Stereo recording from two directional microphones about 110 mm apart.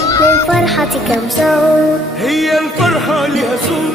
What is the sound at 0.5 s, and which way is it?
Music, centre (ahead or behind).